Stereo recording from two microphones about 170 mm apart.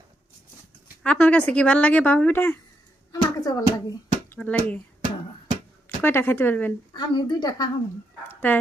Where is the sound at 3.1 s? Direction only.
20° left (ahead or behind).